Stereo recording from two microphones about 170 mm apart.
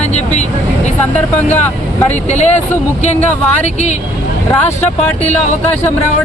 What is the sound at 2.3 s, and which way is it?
Speech, 45° left (ahead or behind).